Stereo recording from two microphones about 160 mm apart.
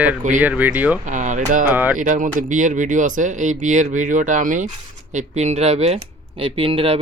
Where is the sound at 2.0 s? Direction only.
55° right (ahead or behind).